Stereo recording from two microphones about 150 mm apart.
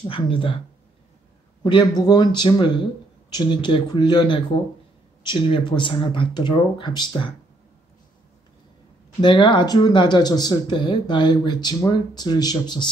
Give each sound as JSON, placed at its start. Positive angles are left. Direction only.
{"t": 0.0, "sound": "speech", "side_deg": 35}
{"t": 1.6, "sound": "speech", "side_deg": 30}
{"t": 9.2, "sound": "speech", "side_deg": 30}